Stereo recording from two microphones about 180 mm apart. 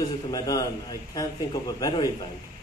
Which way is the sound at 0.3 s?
20° left (ahead or behind).